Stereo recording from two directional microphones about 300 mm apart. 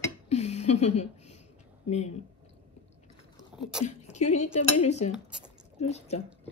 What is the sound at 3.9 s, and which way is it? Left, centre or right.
Dishes, left.